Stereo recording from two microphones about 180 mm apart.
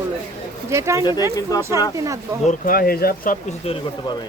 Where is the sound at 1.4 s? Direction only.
20° left (ahead or behind).